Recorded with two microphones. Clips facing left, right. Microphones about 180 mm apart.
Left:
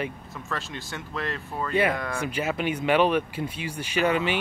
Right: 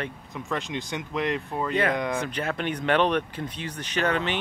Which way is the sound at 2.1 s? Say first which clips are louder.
Left 1 dB; 10° left (ahead or behind).